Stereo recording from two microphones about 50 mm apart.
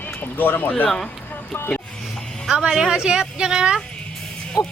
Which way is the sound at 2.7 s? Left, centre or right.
Centre.